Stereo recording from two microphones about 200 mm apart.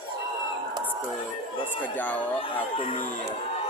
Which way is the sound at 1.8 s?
10° left (ahead or behind).